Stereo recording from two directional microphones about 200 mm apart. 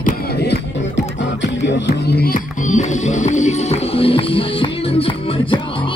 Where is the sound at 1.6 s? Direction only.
55° left (ahead or behind).